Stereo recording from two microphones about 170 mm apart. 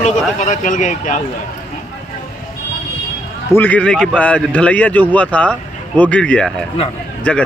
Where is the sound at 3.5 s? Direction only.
10° left (ahead or behind).